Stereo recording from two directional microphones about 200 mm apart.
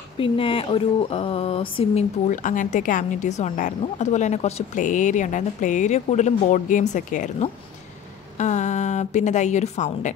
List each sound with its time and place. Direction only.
0.2 s speech: 25° left (ahead or behind)
2.2 s a woman's voice: 40° left (ahead or behind)